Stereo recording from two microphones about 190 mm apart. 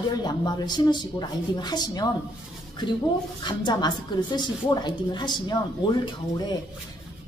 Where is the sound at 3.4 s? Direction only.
20° left (ahead or behind).